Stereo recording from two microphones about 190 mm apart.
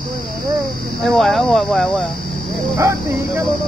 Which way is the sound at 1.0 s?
Centre (ahead or behind).